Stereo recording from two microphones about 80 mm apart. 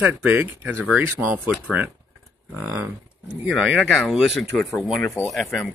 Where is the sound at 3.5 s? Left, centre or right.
Centre.